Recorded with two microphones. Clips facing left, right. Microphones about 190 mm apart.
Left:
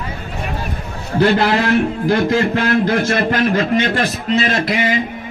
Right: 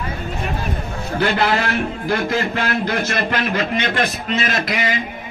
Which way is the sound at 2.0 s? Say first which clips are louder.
Left 4 dB; 30° left (ahead or behind).